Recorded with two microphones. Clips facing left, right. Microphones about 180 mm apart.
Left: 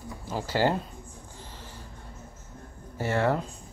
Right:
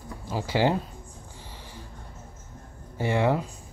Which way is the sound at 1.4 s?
15° right (ahead or behind).